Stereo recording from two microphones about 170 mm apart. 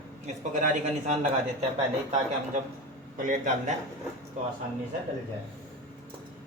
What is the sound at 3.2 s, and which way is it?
Speech, 50° right (ahead or behind).